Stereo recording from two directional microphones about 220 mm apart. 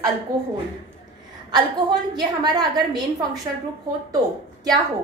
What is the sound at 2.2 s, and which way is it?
A woman's voice, 20° right (ahead or behind).